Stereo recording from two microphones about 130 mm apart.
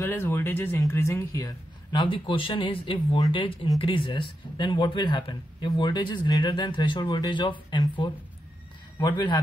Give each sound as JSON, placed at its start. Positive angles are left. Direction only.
{"t": 0.0, "sound": "speech", "side_deg": 15}